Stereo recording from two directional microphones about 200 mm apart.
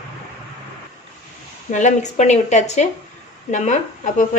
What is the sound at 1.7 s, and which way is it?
A woman's voice, 35° left (ahead or behind).